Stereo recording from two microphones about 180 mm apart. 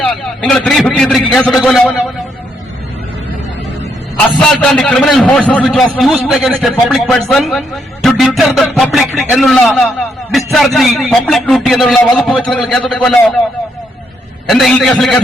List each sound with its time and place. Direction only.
0.0 s a man's voice: centre (ahead or behind)
4.4 s a man's voice: 5° left (ahead or behind)
14.4 s a man's voice: centre (ahead or behind)